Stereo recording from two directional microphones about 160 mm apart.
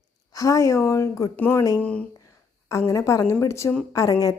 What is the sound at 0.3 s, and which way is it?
Speech, 20° left (ahead or behind).